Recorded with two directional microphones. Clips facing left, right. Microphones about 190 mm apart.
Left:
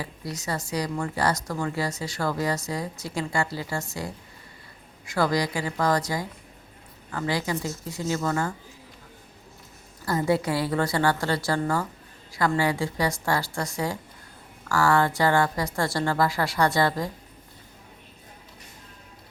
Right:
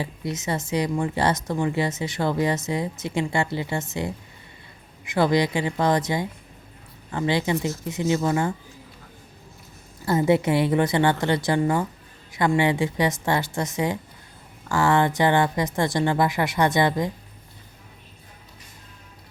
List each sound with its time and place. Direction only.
0.0 s speech: 25° right (ahead or behind)
10.1 s speech: 20° right (ahead or behind)